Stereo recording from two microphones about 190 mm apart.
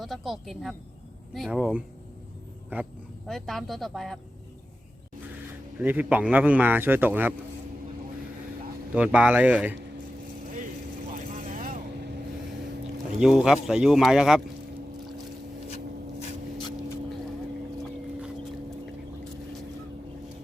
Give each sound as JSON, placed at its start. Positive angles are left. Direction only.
{"t": 0.0, "sound": "speech", "side_deg": 0}
{"t": 3.2, "sound": "speech", "side_deg": 0}
{"t": 5.8, "sound": "a man's voice", "side_deg": -10}
{"t": 9.0, "sound": "a man's voice", "side_deg": -5}
{"t": 11.3, "sound": "vehicle", "side_deg": -45}
{"t": 13.1, "sound": "speech", "side_deg": -5}
{"t": 16.6, "sound": "vehicle", "side_deg": 20}